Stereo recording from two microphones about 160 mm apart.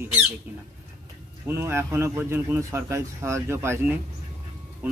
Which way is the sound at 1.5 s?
15° right (ahead or behind).